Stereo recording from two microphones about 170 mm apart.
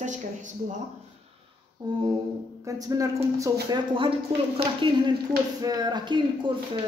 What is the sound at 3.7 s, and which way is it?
A woman's voice, 30° right (ahead or behind).